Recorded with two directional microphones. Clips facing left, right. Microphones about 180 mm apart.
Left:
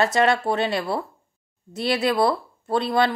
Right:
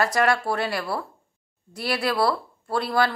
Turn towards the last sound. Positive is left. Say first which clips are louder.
# left 2 dB
turn(degrees=20)  # may be behind; listen again after turning